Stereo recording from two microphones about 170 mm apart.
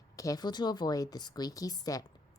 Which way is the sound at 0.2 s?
20° left (ahead or behind).